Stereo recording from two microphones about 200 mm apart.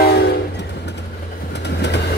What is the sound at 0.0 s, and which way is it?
Train, 55° left (ahead or behind).